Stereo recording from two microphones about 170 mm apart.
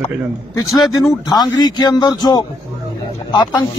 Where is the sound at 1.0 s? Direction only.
25° left (ahead or behind).